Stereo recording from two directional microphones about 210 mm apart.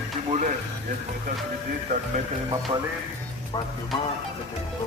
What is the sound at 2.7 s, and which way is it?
Speech, 25° right (ahead or behind).